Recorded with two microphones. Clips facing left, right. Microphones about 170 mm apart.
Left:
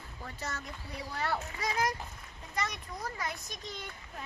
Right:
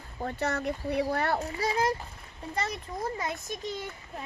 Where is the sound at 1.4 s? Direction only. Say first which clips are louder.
Right 5 dB; 30° right (ahead or behind).